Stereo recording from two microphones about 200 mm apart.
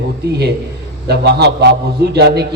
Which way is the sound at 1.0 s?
55° right (ahead or behind).